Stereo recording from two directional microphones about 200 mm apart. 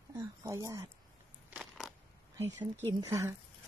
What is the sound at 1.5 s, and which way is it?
Crushing, centre (ahead or behind).